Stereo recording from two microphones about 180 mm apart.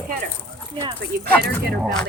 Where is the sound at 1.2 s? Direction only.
60° right (ahead or behind).